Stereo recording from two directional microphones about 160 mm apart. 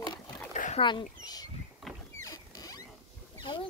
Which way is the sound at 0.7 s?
30° left (ahead or behind).